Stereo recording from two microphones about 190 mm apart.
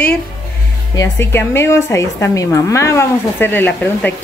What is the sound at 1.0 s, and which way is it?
Speech, 15° left (ahead or behind).